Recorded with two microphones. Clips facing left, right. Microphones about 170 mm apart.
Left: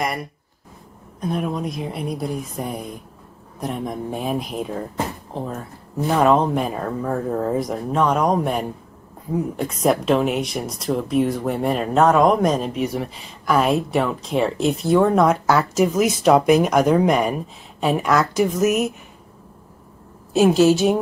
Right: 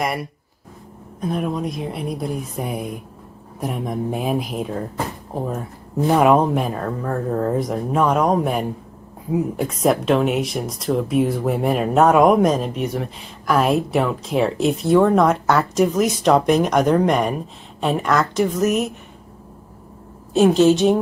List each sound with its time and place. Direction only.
1.2 s speech: centre (ahead or behind)
5.3 s speech: 10° right (ahead or behind); by 18.9 s 5° left (ahead or behind)
20.3 s speech: 5° left (ahead or behind)